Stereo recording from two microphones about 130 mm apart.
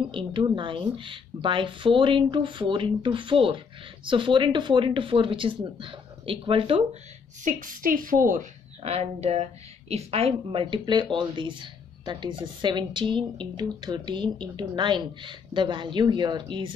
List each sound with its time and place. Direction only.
0.1 s a woman's voice: 40° right (ahead or behind)
7.4 s a woman's voice: 90° right
8.8 s a woman's voice: 55° right (ahead or behind); by 16.7 s 40° right (ahead or behind)